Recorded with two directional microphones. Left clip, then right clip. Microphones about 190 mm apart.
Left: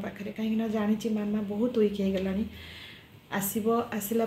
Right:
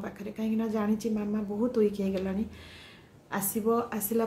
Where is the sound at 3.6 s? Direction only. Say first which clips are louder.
Even; 10° right (ahead or behind).